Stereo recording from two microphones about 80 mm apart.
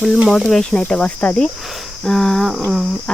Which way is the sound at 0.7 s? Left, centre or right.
Centre.